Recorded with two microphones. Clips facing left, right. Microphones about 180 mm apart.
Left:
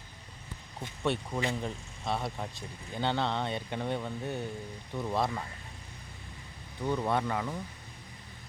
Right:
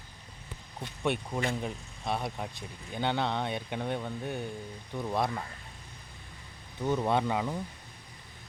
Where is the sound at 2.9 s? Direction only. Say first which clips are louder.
Even; 15° right (ahead or behind).